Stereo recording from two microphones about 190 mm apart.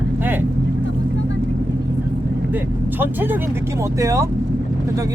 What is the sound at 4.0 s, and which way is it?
Speech, 15° right (ahead or behind).